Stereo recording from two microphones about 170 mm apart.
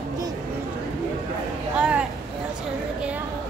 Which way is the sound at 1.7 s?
5° right (ahead or behind).